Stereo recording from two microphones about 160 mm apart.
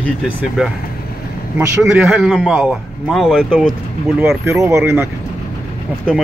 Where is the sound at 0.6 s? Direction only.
5° right (ahead or behind).